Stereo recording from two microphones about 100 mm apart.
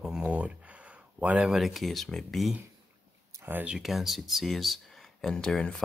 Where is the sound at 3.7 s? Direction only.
5° right (ahead or behind).